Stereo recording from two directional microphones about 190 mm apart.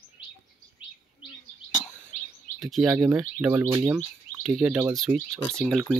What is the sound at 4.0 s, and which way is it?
Speech, 5° right (ahead or behind).